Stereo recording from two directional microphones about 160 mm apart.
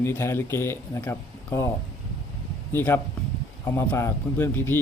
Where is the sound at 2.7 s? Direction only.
15° left (ahead or behind).